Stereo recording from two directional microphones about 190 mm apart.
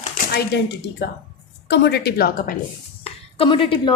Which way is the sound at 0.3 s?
60° left (ahead or behind).